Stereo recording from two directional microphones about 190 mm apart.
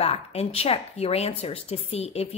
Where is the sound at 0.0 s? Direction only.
35° left (ahead or behind).